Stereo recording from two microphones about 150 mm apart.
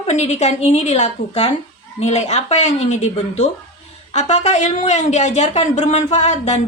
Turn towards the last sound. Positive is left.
turn(degrees=50)  # may be behind; listen again after turning